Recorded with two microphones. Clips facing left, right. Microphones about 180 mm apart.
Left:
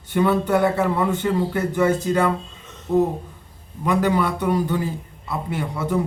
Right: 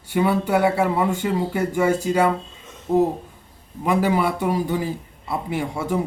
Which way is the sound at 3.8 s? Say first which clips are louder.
Even; 10° right (ahead or behind).